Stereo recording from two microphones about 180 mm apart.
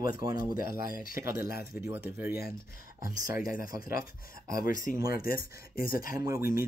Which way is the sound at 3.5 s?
50° left (ahead or behind).